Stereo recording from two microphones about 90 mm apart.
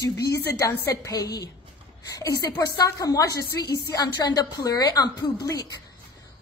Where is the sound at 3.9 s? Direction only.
50° left (ahead or behind).